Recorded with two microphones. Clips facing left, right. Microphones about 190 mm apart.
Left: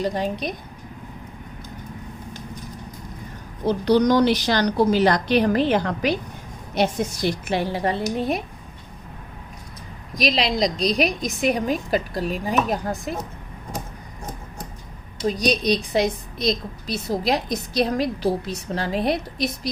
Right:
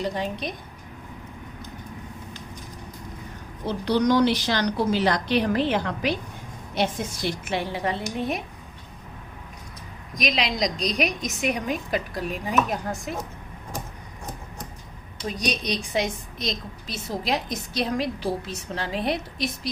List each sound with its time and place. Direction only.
3.7 s a woman's voice: 40° left (ahead or behind)
10.2 s a woman's voice: 35° left (ahead or behind)
15.2 s a woman's voice: 35° left (ahead or behind)